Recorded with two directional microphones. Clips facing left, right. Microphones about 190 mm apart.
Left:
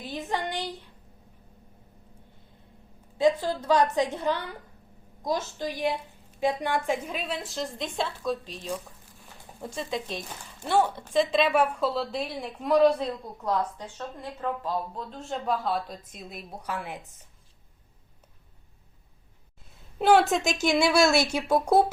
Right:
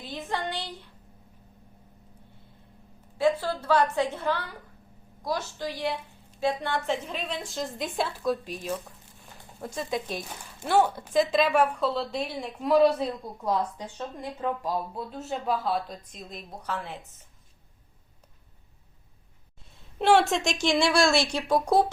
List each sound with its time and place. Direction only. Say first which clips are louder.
0.0 s a sound: left 1 dB; 15° left (ahead or behind)
3.4 s a woman's voice: left 1 dB; 15° left (ahead or behind); by 8.4 s 5° right (ahead or behind)
9.6 s speech: right 1 dB; centre (ahead or behind)
20.0 s a woman's voice: left 1 dB; centre (ahead or behind)